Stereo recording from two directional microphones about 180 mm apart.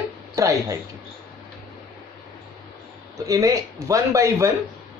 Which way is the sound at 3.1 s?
20° right (ahead or behind).